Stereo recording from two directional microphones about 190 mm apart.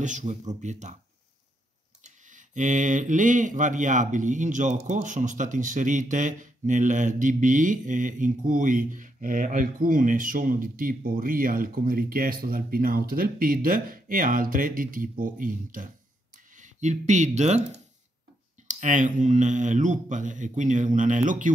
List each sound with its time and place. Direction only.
0.2 s speech: 40° right (ahead or behind)
2.0 s speech: 40° right (ahead or behind)
18.7 s speech: 40° right (ahead or behind)